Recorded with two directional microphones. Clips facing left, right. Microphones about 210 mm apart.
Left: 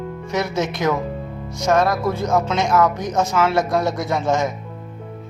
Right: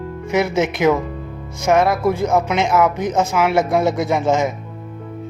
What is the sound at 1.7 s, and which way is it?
Speech, 20° right (ahead or behind).